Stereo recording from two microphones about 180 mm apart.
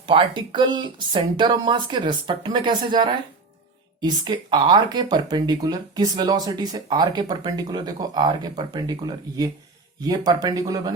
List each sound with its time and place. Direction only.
0.0 s speech: 25° right (ahead or behind)